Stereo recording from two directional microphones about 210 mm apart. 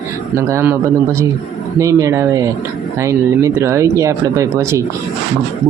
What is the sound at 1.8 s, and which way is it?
Speech, 15° right (ahead or behind).